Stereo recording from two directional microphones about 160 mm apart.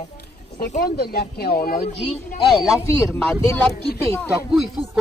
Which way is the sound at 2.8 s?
15° left (ahead or behind).